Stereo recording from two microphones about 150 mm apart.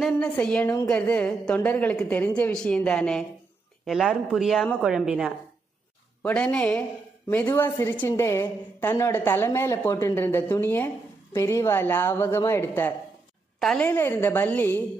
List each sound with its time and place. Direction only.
0.0 s a woman's voice: 5° left (ahead or behind)
6.2 s a woman's voice: 10° left (ahead or behind)